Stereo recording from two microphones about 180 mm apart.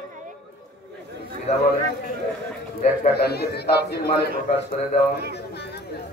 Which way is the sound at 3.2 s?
65° left (ahead or behind).